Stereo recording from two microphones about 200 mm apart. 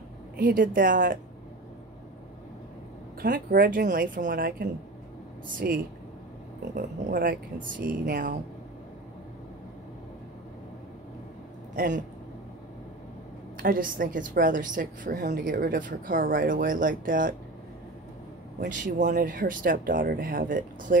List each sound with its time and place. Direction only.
0.4 s speech: 45° right (ahead or behind)
3.2 s speech: 45° right (ahead or behind)
11.7 s a man's voice: 45° right (ahead or behind)
13.6 s speech: 45° right (ahead or behind)
18.7 s speech: 40° right (ahead or behind)